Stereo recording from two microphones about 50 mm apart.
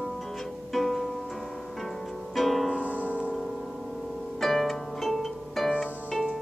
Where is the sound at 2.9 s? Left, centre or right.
Right.